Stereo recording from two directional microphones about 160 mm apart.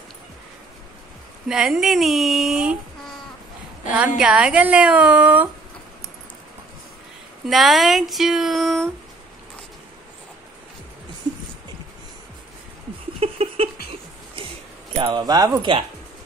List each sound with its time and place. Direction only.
1.5 s speech: centre (ahead or behind)
4.2 s a woman's voice: 5° right (ahead or behind)
7.4 s speech: centre (ahead or behind)
13.2 s a sound: 40° right (ahead or behind)
15.0 s speech: 30° right (ahead or behind)